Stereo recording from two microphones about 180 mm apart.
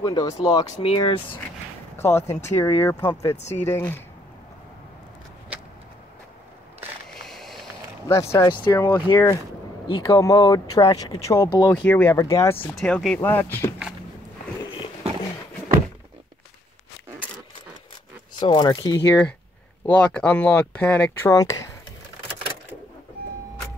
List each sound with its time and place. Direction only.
0.0 s speech: 20° left (ahead or behind)
2.0 s speech: 15° left (ahead or behind)
7.2 s vehicle: centre (ahead or behind)
8.1 s speech: 15° left (ahead or behind)
11.7 s speech: 10° left (ahead or behind)
12.6 s speech: 5° left (ahead or behind)
18.4 s speech: 25° left (ahead or behind)
19.0 s speech: 10° left (ahead or behind)